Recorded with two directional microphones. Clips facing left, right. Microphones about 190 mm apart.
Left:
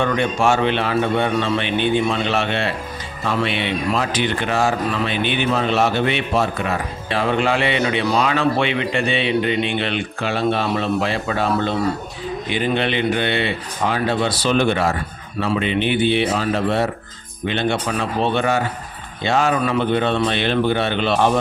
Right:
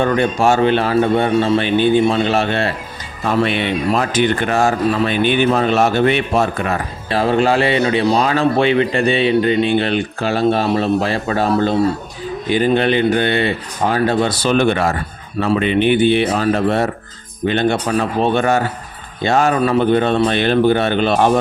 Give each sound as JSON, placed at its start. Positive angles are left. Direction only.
{"t": 0.0, "sound": "speech", "side_deg": -40}